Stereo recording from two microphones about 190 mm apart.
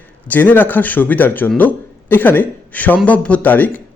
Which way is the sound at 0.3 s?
10° left (ahead or behind).